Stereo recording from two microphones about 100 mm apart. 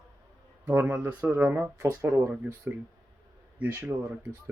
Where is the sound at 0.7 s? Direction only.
15° right (ahead or behind).